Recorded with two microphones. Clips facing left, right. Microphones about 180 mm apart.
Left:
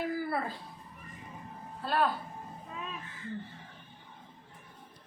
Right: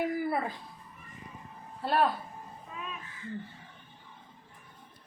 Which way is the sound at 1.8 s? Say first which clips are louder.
Right 3 dB; 25° right (ahead or behind).